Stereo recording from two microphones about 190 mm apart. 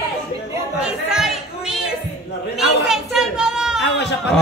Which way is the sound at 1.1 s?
5° right (ahead or behind).